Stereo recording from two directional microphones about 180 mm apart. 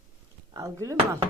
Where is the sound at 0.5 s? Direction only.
15° right (ahead or behind).